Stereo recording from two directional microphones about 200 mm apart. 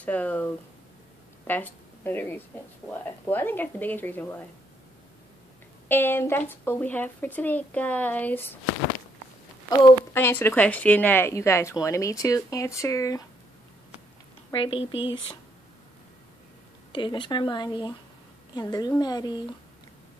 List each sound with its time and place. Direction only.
0.0 s speech: 5° left (ahead or behind)
1.5 s a woman's voice: 10° left (ahead or behind)
5.9 s speech: 10° left (ahead or behind)
9.7 s speech: 10° left (ahead or behind)
14.5 s a woman's voice: 25° left (ahead or behind)
16.9 s a woman's voice: 25° left (ahead or behind)